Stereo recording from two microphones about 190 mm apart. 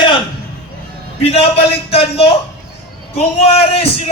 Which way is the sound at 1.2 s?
30° left (ahead or behind).